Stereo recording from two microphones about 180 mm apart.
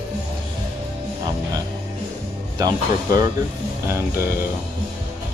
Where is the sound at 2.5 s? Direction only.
20° right (ahead or behind).